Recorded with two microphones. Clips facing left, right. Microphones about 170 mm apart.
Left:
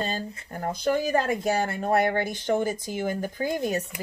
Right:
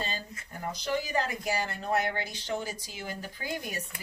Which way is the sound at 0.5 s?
50° left (ahead or behind).